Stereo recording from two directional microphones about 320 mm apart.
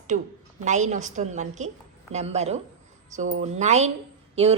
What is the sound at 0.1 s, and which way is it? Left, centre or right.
A woman's voice, right.